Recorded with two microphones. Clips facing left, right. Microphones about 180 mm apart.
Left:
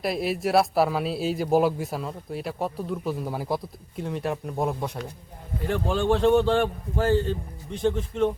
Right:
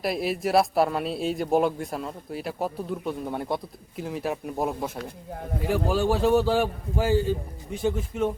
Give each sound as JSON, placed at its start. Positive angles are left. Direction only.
{"t": 0.0, "sound": "a man's voice", "side_deg": 0}